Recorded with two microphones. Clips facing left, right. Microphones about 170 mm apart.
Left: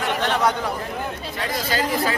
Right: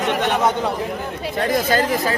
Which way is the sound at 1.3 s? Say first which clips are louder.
Right 7 dB; 50° right (ahead or behind).